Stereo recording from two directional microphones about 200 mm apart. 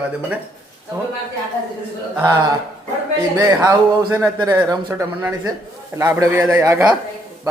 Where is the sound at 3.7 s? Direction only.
15° right (ahead or behind).